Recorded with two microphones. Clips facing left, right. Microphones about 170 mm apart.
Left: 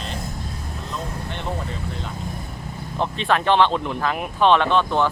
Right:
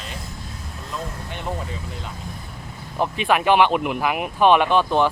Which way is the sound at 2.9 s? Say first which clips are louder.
Right 1 dB; 10° right (ahead or behind).